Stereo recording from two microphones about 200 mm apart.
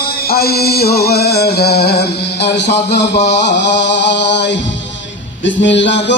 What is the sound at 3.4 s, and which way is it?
Music, 60° left (ahead or behind).